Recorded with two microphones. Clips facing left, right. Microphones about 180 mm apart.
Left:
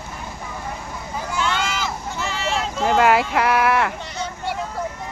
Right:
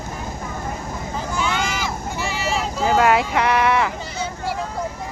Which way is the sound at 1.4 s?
10° right (ahead or behind).